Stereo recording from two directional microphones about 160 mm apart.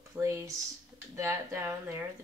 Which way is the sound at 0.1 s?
15° right (ahead or behind).